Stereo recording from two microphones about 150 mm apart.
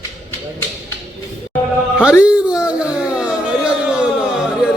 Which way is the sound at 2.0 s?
5° right (ahead or behind).